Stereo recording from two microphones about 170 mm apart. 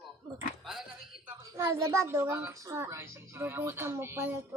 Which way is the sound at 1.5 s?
15° right (ahead or behind).